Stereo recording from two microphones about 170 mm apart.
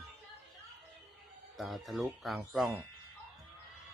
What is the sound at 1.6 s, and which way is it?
Speech, centre (ahead or behind).